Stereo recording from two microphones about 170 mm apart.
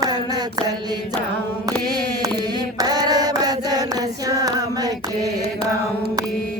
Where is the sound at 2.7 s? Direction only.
25° right (ahead or behind).